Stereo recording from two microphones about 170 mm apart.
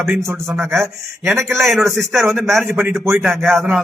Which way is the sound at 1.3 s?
Centre (ahead or behind).